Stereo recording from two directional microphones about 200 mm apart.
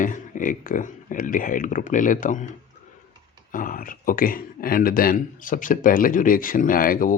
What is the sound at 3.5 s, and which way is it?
Speech, 45° left (ahead or behind).